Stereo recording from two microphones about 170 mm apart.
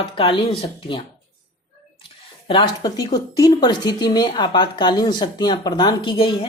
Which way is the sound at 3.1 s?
20° left (ahead or behind).